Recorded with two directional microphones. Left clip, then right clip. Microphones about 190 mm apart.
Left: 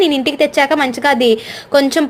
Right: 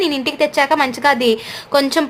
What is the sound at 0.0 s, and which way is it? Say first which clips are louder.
Speech: left 4 dB; 15° left (ahead or behind).